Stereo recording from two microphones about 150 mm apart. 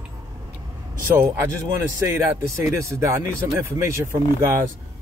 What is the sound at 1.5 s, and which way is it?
Speech, 15° right (ahead or behind).